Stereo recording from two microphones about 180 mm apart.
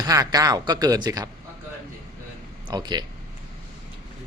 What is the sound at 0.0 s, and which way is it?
A man's voice, 20° right (ahead or behind).